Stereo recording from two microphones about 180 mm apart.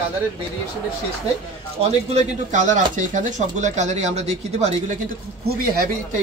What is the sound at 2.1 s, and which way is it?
A man's voice, 40° right (ahead or behind).